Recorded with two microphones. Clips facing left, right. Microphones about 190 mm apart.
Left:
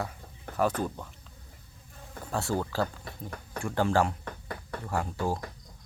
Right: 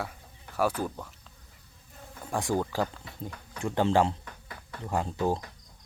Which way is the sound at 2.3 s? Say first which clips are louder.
Right 2 dB; 15° right (ahead or behind).